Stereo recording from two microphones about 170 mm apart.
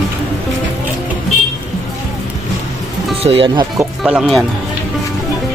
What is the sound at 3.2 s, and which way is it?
Speech, 35° right (ahead or behind).